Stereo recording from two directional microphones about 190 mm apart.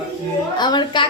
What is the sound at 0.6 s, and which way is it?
Speech, 25° left (ahead or behind).